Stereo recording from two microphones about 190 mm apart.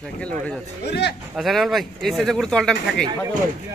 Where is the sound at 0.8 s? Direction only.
60° left (ahead or behind).